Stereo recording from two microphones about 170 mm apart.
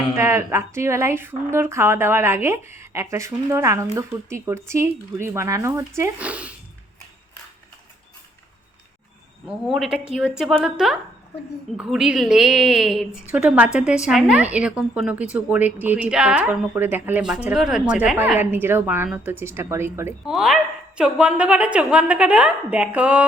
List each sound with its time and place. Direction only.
0.2 s a woman's voice: 15° right (ahead or behind)
9.5 s a woman's voice: centre (ahead or behind)
20.2 s a woman's voice: centre (ahead or behind)